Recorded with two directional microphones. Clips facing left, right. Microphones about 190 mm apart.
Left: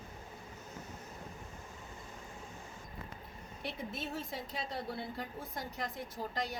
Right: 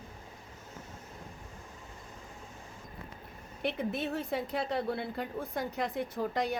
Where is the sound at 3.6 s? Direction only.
60° right (ahead or behind).